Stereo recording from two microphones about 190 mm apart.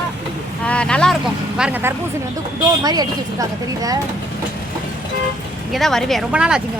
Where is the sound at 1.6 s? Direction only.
10° right (ahead or behind).